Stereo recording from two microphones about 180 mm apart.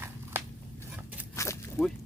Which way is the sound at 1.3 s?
15° left (ahead or behind).